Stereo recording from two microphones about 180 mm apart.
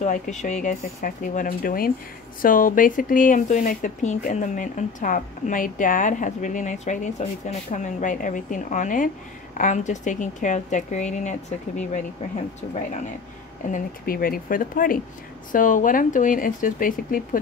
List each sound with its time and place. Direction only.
0.0 s speech: 40° left (ahead or behind)
13.7 s speech: 50° left (ahead or behind)